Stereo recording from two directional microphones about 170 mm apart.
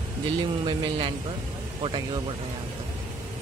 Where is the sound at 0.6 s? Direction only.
30° right (ahead or behind).